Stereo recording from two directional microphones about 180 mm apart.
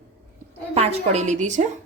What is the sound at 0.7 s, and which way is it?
Speech, 35° right (ahead or behind).